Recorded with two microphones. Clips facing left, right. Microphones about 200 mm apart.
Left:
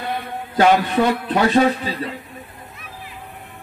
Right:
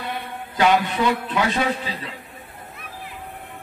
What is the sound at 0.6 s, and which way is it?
A man's voice, 45° left (ahead or behind).